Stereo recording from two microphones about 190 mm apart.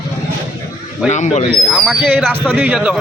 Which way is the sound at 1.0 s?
40° left (ahead or behind).